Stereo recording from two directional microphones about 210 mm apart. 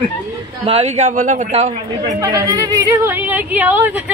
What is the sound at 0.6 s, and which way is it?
Speech, 30° right (ahead or behind).